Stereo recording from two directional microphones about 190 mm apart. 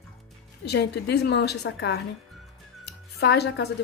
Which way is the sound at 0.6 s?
60° left (ahead or behind).